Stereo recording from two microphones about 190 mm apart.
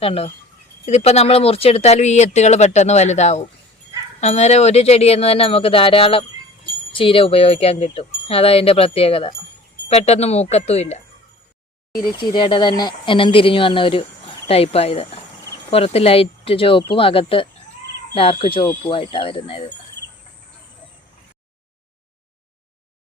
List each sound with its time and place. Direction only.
0.0 s speech: 30° left (ahead or behind)
12.0 s speech: 25° left (ahead or behind)